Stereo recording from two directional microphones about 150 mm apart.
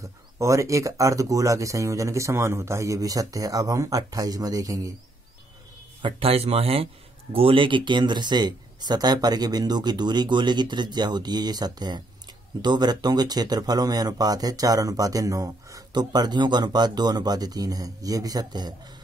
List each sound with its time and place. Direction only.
0.0 s speech: 20° right (ahead or behind)
6.0 s speech: 40° right (ahead or behind)